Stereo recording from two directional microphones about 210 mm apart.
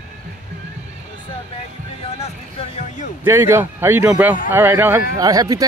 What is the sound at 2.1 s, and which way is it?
Hubbub, 30° left (ahead or behind).